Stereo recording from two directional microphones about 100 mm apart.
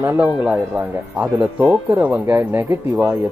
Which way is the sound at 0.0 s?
20° right (ahead or behind).